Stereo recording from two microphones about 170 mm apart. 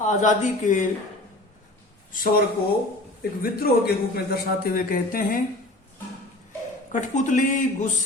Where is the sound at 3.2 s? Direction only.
65° left (ahead or behind).